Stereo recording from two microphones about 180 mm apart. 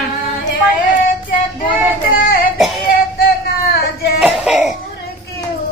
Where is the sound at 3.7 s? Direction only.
60° left (ahead or behind).